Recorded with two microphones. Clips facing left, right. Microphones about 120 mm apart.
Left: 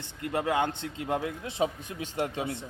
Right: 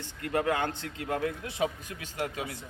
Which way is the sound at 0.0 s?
20° left (ahead or behind).